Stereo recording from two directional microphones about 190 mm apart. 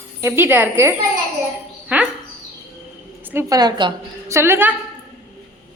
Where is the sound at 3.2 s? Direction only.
10° right (ahead or behind).